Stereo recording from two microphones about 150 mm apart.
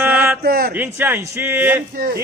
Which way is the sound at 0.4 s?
85° right.